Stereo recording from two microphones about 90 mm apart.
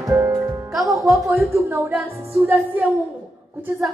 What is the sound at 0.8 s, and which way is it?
Music, centre (ahead or behind).